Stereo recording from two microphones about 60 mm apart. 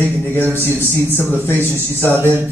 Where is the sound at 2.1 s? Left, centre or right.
Right.